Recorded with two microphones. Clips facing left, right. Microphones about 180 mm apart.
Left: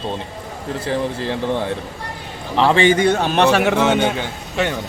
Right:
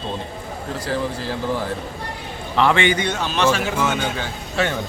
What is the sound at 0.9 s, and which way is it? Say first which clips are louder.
Speech: left 3 dB; 25° left (ahead or behind).